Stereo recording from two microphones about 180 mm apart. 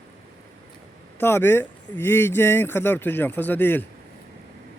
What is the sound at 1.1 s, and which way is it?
Speech, 15° left (ahead or behind).